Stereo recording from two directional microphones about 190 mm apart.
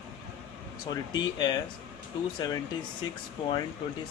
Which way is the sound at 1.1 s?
20° left (ahead or behind).